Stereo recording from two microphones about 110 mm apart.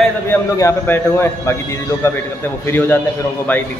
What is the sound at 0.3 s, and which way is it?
A man's voice, 25° left (ahead or behind).